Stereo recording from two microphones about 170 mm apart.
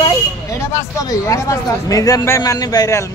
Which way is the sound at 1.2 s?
20° left (ahead or behind).